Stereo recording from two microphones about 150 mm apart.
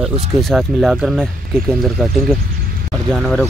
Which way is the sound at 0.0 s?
Centre (ahead or behind).